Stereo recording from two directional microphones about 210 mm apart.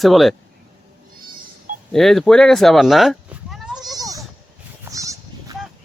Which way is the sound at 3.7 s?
15° right (ahead or behind).